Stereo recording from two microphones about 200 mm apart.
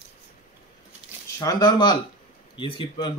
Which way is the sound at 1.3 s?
20° left (ahead or behind).